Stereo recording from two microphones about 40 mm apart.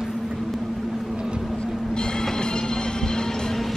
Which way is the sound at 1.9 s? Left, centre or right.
Left.